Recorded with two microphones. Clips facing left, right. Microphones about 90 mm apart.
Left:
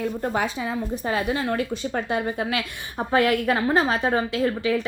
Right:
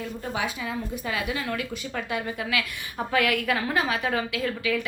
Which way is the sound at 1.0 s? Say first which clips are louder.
Left 6 dB; 35° left (ahead or behind).